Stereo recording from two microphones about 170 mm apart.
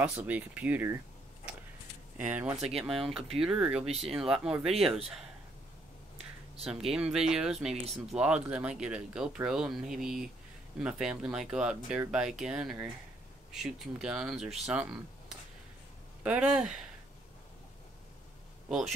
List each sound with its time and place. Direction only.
0.0 s speech: 10° right (ahead or behind)
2.6 s speech: 35° right (ahead or behind)
2.9 s speech: centre (ahead or behind)
6.6 s speech: 5° right (ahead or behind)
18.7 s speech: 5° right (ahead or behind)